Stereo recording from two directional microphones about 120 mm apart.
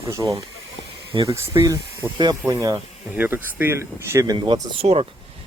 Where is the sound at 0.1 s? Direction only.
25° right (ahead or behind).